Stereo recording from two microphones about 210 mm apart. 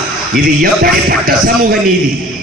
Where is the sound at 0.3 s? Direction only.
45° right (ahead or behind).